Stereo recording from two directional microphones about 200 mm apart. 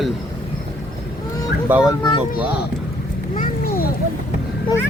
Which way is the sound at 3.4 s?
45° left (ahead or behind).